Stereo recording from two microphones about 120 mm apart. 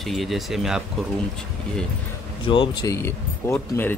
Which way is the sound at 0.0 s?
Centre (ahead or behind).